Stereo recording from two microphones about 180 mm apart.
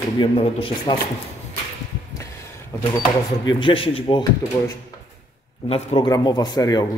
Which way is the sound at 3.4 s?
30° left (ahead or behind).